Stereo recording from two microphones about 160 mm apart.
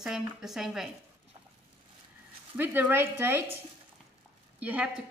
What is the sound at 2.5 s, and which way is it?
Speech, 10° right (ahead or behind).